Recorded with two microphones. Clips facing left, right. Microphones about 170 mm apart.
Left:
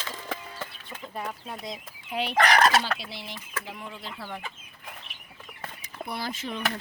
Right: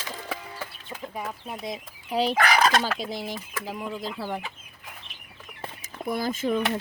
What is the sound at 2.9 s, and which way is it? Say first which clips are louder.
Speech: right 8 dB; 45° right (ahead or behind).